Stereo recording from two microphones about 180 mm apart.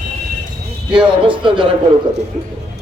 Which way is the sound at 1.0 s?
30° right (ahead or behind).